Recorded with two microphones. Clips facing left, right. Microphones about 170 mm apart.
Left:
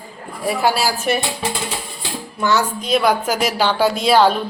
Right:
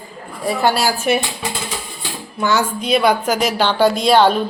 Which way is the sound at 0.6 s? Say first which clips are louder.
Right 2 dB; 5° left (ahead or behind).